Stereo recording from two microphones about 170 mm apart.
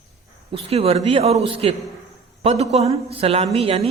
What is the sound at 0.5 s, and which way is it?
A woman's voice, 35° right (ahead or behind).